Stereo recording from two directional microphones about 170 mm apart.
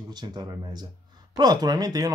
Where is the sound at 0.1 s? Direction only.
25° right (ahead or behind).